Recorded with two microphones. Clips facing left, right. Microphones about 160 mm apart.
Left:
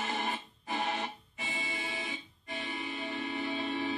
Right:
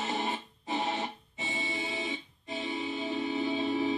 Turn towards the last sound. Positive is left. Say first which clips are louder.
# right 5 dB
turn(degrees=-25)  # may be behind; listen again after turning